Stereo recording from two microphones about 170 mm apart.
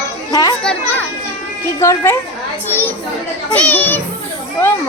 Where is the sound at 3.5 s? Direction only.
10° left (ahead or behind).